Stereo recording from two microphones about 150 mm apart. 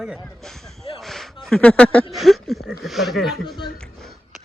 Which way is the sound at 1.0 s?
Centre (ahead or behind).